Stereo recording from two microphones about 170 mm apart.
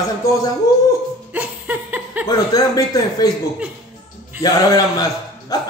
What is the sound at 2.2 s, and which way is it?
Speech, 20° left (ahead or behind).